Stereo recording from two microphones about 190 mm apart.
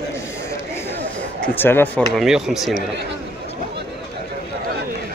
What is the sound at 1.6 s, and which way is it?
Speech, 10° left (ahead or behind).